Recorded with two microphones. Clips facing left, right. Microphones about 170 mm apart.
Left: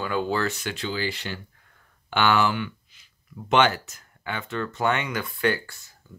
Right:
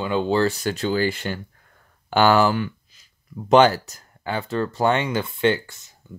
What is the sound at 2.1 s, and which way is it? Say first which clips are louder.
Speech: right 5 dB; 40° right (ahead or behind).